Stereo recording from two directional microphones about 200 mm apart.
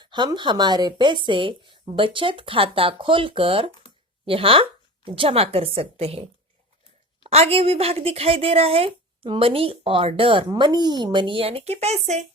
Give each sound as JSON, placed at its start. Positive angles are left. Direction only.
{"t": 0.0, "sound": "speech", "side_deg": -20}
{"t": 7.3, "sound": "speech", "side_deg": -30}